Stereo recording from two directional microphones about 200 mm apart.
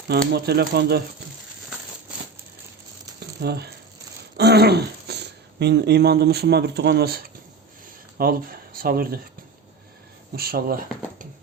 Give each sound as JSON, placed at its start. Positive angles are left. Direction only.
{"t": 0.3, "sound": "speech", "side_deg": -55}
{"t": 3.2, "sound": "a sound", "side_deg": -55}
{"t": 4.4, "sound": "speech", "side_deg": -55}
{"t": 10.3, "sound": "speech", "side_deg": -50}